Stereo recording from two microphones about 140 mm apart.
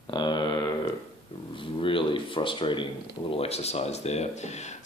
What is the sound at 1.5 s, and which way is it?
Speech, 35° left (ahead or behind).